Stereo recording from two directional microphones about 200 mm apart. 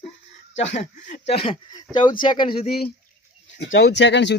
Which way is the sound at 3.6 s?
55° left (ahead or behind).